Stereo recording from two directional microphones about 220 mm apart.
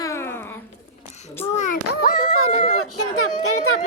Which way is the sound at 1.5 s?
35° left (ahead or behind).